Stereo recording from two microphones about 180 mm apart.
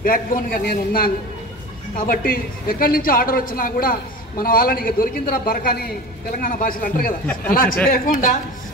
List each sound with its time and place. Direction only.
0.0 s a woman's voice: 50° left (ahead or behind)